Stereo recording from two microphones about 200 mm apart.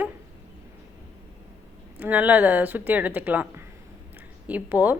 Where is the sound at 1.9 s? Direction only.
10° right (ahead or behind).